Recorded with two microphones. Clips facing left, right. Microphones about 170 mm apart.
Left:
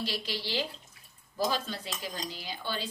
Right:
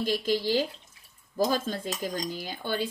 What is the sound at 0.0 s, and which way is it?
Speech, 50° right (ahead or behind).